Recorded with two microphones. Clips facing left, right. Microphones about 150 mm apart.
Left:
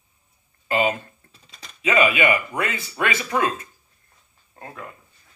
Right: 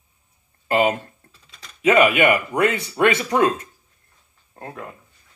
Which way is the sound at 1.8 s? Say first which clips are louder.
Right 4 dB; 50° right (ahead or behind).